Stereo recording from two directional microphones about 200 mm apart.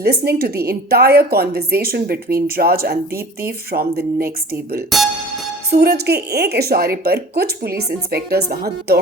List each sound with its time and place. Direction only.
0.0 s a woman's voice: 50° right (ahead or behind)
4.9 s speech: centre (ahead or behind)
5.7 s a woman's voice: 50° right (ahead or behind)